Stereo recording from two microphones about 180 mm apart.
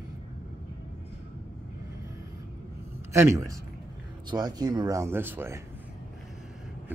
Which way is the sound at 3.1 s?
15° right (ahead or behind).